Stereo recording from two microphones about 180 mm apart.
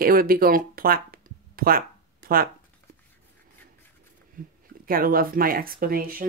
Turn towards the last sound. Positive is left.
turn(degrees=-55)  # may be behind; listen again after turning